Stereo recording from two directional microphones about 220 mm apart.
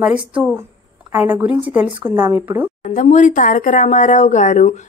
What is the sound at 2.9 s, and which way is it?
Speech, 35° left (ahead or behind).